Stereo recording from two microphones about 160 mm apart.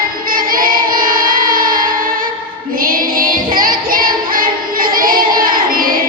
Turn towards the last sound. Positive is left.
turn(degrees=-60)  # may be behind; listen again after turning